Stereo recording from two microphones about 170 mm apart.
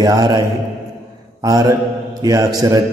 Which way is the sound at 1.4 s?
20° right (ahead or behind).